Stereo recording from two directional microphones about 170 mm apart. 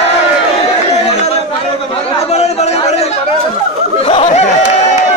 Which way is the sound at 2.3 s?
40° left (ahead or behind).